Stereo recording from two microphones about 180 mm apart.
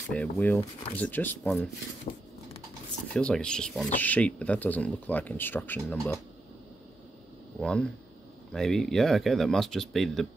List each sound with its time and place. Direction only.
0.1 s speech: 5° left (ahead or behind)
3.1 s speech: 5° left (ahead or behind)
7.6 s speech: 5° left (ahead or behind)